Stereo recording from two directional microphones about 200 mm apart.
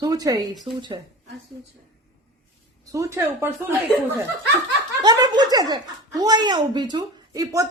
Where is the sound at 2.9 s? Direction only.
15° right (ahead or behind).